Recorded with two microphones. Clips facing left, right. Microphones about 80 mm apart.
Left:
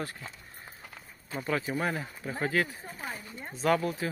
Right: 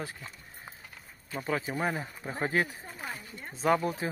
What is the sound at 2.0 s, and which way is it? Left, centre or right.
Speech, right.